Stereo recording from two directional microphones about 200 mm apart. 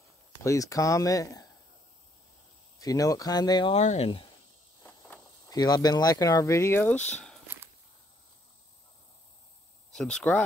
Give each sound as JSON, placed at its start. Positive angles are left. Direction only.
{"t": 0.4, "sound": "speech", "side_deg": 15}
{"t": 2.8, "sound": "speech", "side_deg": 15}
{"t": 4.8, "sound": "speech", "side_deg": 10}
{"t": 7.5, "sound": "walk", "side_deg": -10}
{"t": 9.9, "sound": "speech", "side_deg": 5}